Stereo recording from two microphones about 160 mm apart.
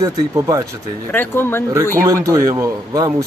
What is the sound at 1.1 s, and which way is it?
Speech, 15° left (ahead or behind).